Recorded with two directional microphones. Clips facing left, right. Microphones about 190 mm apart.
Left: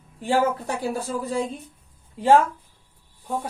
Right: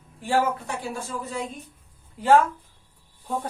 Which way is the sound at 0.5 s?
35° left (ahead or behind).